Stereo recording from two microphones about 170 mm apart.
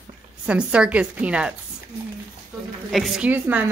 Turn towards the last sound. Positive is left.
turn(degrees=-10)  # may be behind; listen again after turning